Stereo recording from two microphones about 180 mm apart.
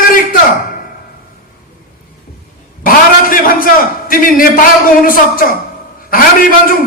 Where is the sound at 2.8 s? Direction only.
50° left (ahead or behind).